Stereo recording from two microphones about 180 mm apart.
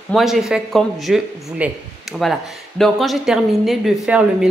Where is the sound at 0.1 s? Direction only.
Centre (ahead or behind).